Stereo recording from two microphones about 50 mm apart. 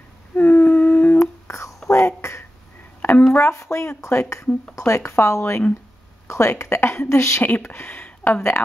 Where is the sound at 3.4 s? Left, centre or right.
Left.